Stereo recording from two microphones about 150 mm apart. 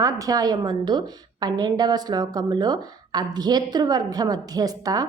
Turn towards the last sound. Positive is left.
turn(degrees=-25)  # may be behind; listen again after turning